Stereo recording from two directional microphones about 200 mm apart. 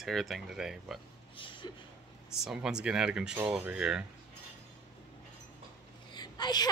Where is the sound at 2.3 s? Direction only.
Centre (ahead or behind).